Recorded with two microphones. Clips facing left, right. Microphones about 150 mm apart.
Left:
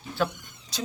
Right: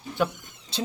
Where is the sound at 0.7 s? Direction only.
25° right (ahead or behind).